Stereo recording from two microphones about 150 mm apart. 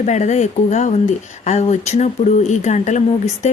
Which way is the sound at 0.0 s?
50° left (ahead or behind).